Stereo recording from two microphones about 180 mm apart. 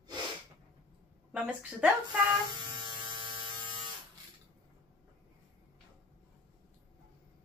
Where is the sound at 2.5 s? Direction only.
25° right (ahead or behind).